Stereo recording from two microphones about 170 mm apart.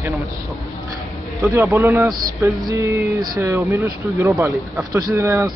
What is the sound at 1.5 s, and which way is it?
Speech, 15° right (ahead or behind).